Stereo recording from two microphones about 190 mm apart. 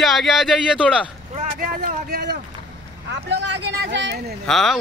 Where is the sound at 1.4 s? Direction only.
45° right (ahead or behind).